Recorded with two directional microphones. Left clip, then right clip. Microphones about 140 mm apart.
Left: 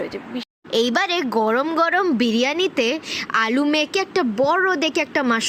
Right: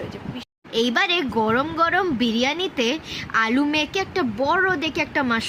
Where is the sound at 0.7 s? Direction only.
55° left (ahead or behind); by 5.4 s 40° left (ahead or behind).